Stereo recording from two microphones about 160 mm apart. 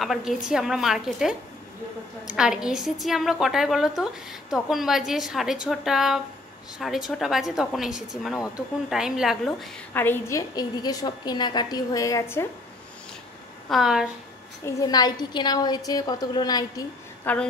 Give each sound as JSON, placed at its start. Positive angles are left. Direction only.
{"t": 0.0, "sound": "a woman's voice", "side_deg": 0}
{"t": 9.9, "sound": "a woman's voice", "side_deg": 15}
{"t": 13.7, "sound": "a woman's voice", "side_deg": 0}
{"t": 14.7, "sound": "a woman's voice", "side_deg": 25}
{"t": 17.2, "sound": "a woman's voice", "side_deg": 10}